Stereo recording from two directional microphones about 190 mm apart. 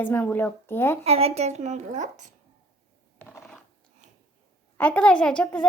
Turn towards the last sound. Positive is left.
turn(degrees=5)  # may be behind; listen again after turning